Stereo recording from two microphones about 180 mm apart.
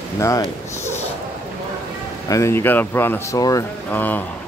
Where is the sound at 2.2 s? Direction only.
15° left (ahead or behind).